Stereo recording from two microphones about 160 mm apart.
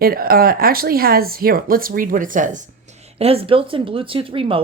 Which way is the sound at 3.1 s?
40° right (ahead or behind).